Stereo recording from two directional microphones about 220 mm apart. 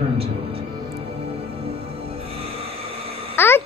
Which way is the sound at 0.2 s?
25° right (ahead or behind).